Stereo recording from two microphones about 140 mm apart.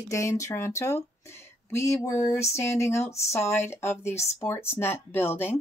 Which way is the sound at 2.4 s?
50° left (ahead or behind).